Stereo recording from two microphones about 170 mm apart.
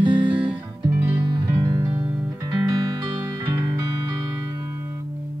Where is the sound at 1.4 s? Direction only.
15° right (ahead or behind).